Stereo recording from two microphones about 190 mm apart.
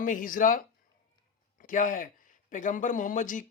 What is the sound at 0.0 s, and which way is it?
Speech, 45° left (ahead or behind).